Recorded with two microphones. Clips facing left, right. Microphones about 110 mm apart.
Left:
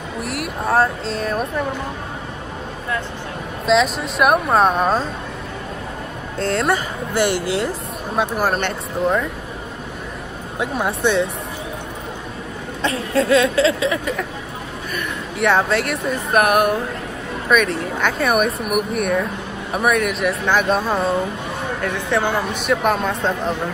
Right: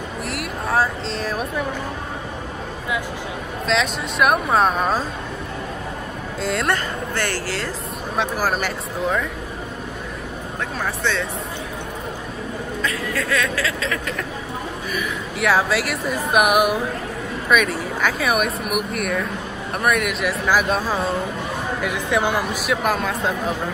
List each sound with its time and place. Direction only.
0.2 s speech: centre (ahead or behind)
3.6 s speech: centre (ahead or behind)
6.4 s speech: centre (ahead or behind)
7.2 s speech: 15° left (ahead or behind)
8.2 s speech: centre (ahead or behind)
10.6 s speech: 15° left (ahead or behind)
12.8 s a woman's voice: 30° left (ahead or behind)
15.0 s speech: centre (ahead or behind)
21.8 s speech: 10° right (ahead or behind)
22.7 s speech: centre (ahead or behind)